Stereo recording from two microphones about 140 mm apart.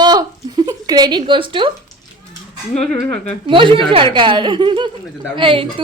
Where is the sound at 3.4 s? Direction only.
35° right (ahead or behind).